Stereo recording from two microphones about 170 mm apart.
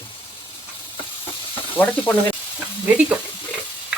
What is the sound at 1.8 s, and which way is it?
Speech, 10° left (ahead or behind).